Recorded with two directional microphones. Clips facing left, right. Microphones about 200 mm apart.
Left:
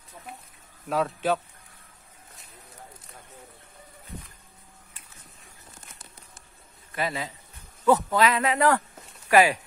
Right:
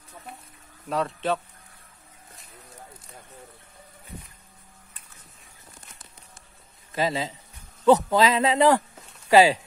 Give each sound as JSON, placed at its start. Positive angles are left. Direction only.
{"t": 0.8, "sound": "speech", "side_deg": 0}
{"t": 7.0, "sound": "speech", "side_deg": -25}